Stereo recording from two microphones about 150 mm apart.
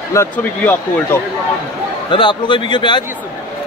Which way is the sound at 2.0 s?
30° left (ahead or behind).